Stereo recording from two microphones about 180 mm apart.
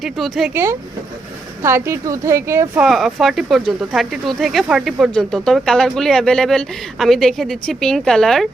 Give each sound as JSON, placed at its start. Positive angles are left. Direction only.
{"t": 0.0, "sound": "speech", "side_deg": 0}
{"t": 0.5, "sound": "speech", "side_deg": -15}
{"t": 2.8, "sound": "speech", "side_deg": 0}